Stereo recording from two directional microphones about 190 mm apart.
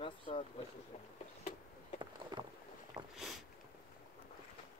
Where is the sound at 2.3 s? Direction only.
20° right (ahead or behind).